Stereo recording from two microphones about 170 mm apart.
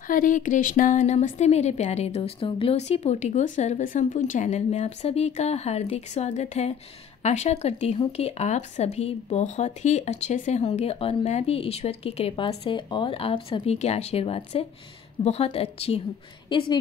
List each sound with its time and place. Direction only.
0.1 s a woman's voice: 50° left (ahead or behind); by 16.7 s 30° left (ahead or behind)